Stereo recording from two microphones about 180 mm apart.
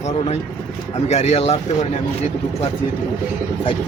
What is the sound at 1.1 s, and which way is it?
Speech, 40° left (ahead or behind).